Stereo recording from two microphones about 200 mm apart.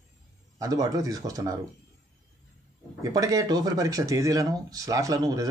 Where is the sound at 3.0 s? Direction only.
15° right (ahead or behind).